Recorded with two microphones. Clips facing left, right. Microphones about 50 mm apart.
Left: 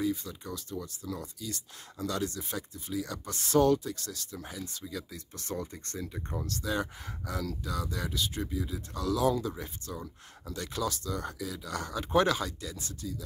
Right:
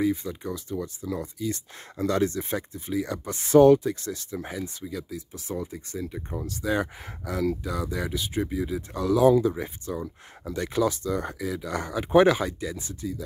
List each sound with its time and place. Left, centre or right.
0.0 s speech: right
5.1 s speech: centre
6.6 s speech: right
8.5 s speech: right